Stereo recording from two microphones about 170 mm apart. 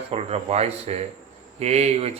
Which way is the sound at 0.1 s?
35° right (ahead or behind).